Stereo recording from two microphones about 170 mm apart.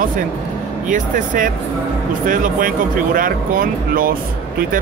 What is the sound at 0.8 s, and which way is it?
Speech, 50° right (ahead or behind).